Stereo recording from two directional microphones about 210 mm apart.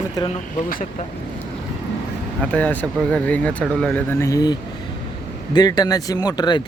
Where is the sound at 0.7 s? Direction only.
35° left (ahead or behind).